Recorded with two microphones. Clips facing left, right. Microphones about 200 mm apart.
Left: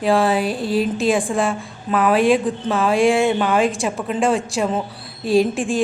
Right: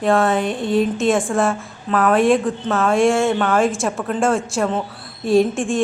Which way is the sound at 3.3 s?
15° left (ahead or behind).